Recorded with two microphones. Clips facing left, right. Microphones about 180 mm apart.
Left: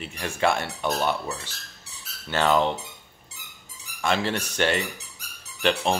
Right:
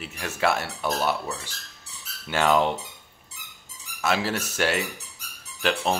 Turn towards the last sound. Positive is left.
turn(degrees=0)  # may be behind; listen again after turning